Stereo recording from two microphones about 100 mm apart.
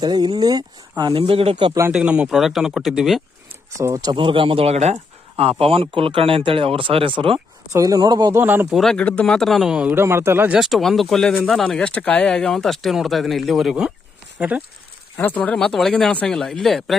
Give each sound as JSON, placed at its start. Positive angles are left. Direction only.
{"t": 0.0, "sound": "speech", "side_deg": -45}
{"t": 1.1, "sound": "speech", "side_deg": -70}
{"t": 1.9, "sound": "speech", "side_deg": -10}
{"t": 3.8, "sound": "speech", "side_deg": -35}
{"t": 4.1, "sound": "speech", "side_deg": -55}
{"t": 5.4, "sound": "speech", "side_deg": -75}
{"t": 7.3, "sound": "speech", "side_deg": -35}
{"t": 8.3, "sound": "a man's voice", "side_deg": -20}
{"t": 8.7, "sound": "speech", "side_deg": 5}
{"t": 9.9, "sound": "a man's voice", "side_deg": -25}
{"t": 10.6, "sound": "speech", "side_deg": 0}
{"t": 15.2, "sound": "speech", "side_deg": 15}